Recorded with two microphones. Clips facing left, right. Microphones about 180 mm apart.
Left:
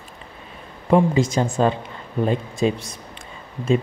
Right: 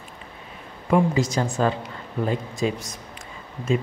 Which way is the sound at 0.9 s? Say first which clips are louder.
Left 3 dB; 25° left (ahead or behind).